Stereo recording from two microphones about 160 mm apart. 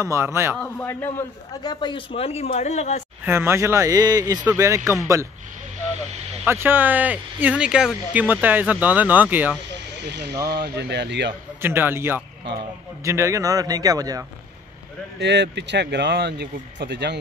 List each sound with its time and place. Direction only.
0.0 s speech: 20° right (ahead or behind)
0.6 s a man's voice: 15° left (ahead or behind); by 3.0 s 45° left (ahead or behind)
3.3 s speech: 15° right (ahead or behind)
6.4 s speech: 15° right (ahead or behind)
10.0 s speech: 90° right
11.6 s speech: 15° right (ahead or behind)
15.1 s speech: 90° right